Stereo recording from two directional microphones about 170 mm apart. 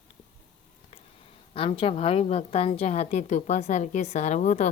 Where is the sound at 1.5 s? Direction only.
35° left (ahead or behind).